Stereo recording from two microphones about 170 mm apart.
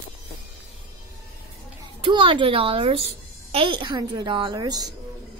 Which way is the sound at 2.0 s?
30° right (ahead or behind).